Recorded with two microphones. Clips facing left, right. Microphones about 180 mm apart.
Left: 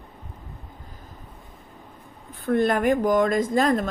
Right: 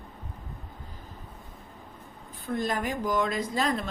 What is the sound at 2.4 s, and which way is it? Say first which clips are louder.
Speech: left 9 dB; 60° left (ahead or behind).